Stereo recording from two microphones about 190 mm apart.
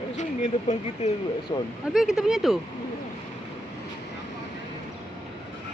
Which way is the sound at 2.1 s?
Centre (ahead or behind).